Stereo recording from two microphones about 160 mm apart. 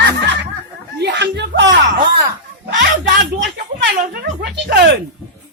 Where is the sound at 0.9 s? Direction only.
90° right.